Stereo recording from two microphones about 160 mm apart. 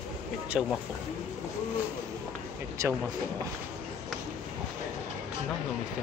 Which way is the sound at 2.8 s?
20° right (ahead or behind).